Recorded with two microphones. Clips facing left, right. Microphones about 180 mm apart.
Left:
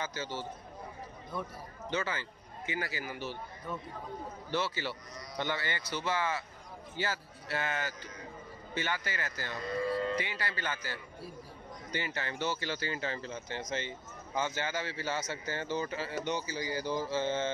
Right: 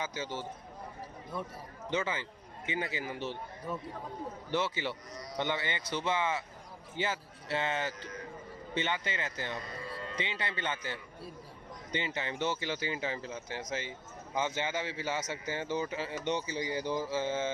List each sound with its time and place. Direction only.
0.0 s speech: 15° right (ahead or behind)
1.9 s a man's voice: 20° right (ahead or behind)
4.5 s speech: 20° right (ahead or behind)
14.3 s speech: 20° right (ahead or behind)